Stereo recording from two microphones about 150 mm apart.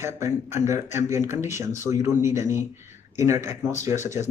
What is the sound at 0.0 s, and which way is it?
Speech, 20° right (ahead or behind).